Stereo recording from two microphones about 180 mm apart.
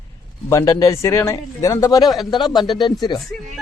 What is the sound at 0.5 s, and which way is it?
Speech, 15° left (ahead or behind).